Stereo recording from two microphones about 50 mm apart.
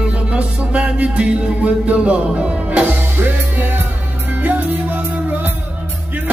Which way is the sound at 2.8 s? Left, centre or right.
Right.